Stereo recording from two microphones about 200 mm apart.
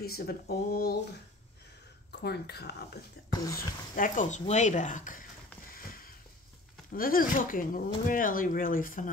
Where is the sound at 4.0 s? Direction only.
40° left (ahead or behind).